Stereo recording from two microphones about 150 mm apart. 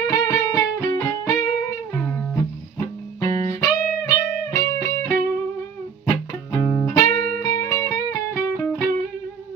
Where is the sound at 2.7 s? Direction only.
20° left (ahead or behind).